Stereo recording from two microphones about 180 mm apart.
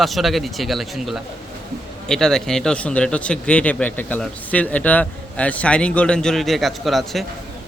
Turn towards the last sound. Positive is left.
turn(degrees=0)  # may be behind; listen again after turning